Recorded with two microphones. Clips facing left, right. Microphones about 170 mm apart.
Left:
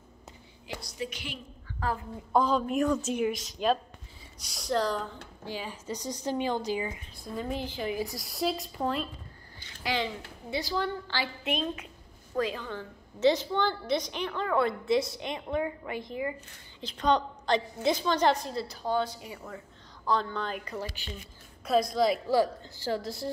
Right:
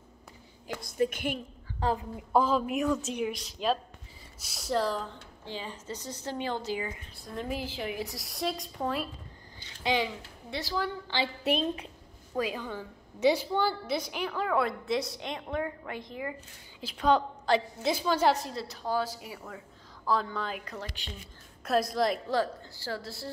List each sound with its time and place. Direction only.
0.7 s a woman's voice: 50° right (ahead or behind)
1.8 s a woman's voice: 20° right (ahead or behind)
2.3 s a woman's voice: 5° right (ahead or behind)
5.4 s a woman's voice: 10° left (ahead or behind)
7.3 s a woman's voice: 5° right (ahead or behind)
9.9 s speech: 20° right (ahead or behind)
10.5 s a woman's voice: centre (ahead or behind)
11.1 s a woman's voice: 20° right (ahead or behind)
11.4 s a woman's voice: 35° right (ahead or behind)
12.4 s a woman's voice: 10° right (ahead or behind); by 22.5 s 5° left (ahead or behind)
22.6 s a woman's voice: 20° left (ahead or behind)